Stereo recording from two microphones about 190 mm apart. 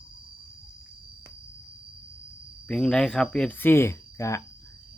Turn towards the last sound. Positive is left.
turn(degrees=15)  # may be behind; listen again after turning